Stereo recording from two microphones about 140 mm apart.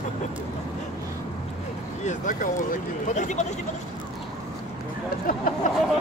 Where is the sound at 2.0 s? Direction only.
65° left (ahead or behind).